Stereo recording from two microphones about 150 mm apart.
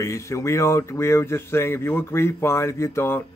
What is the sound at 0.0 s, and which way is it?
Speech, 20° left (ahead or behind).